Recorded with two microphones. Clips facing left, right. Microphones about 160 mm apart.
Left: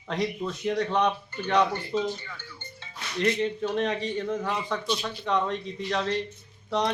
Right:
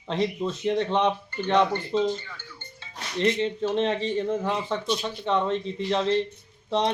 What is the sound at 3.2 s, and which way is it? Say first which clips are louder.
A man's voice: right 2 dB; 25° right (ahead or behind).